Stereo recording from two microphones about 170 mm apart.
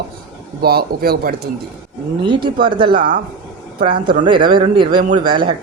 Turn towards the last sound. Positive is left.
turn(degrees=-30)  # may be behind; listen again after turning